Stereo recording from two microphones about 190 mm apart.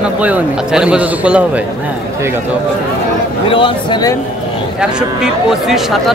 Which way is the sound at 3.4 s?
25° left (ahead or behind).